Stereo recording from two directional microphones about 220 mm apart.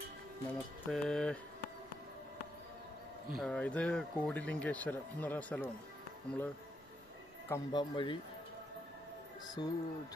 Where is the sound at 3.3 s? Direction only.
5° left (ahead or behind).